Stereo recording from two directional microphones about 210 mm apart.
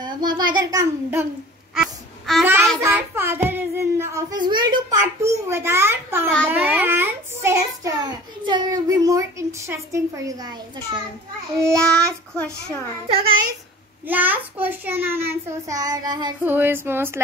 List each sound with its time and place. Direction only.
0.0 s child singing: 20° right (ahead or behind)
1.8 s a sound: centre (ahead or behind)
2.4 s a child's voice: 10° right (ahead or behind)
11.6 s child singing: 5° left (ahead or behind)
14.0 s a child's voice: 10° right (ahead or behind)